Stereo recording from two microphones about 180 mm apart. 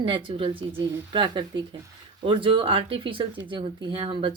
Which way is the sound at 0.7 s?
15° right (ahead or behind).